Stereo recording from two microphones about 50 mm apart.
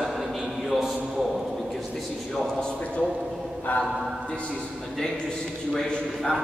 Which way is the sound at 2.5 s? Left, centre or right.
Centre.